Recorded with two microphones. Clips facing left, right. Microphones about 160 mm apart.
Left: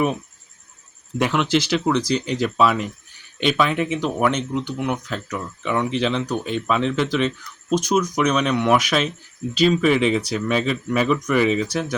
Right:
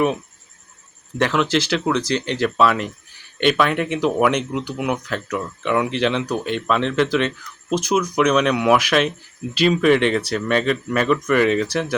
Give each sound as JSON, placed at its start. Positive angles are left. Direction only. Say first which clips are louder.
{"t": 1.2, "sound": "speech", "louder": "right 1 dB", "side_deg": 0}